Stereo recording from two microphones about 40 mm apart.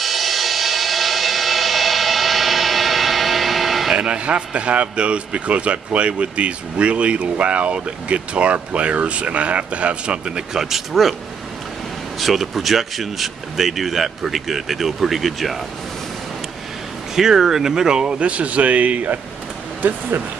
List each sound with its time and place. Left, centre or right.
0.0 s music: centre
3.9 s a man's voice: right
10.9 s speech: centre
12.2 s speech: centre
17.1 s speech: centre; by 20.0 s right